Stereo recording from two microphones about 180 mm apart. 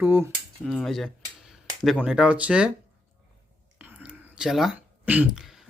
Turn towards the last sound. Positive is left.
turn(degrees=0)  # may be behind; listen again after turning